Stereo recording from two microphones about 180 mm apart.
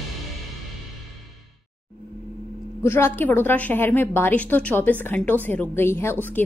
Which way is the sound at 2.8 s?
15° left (ahead or behind).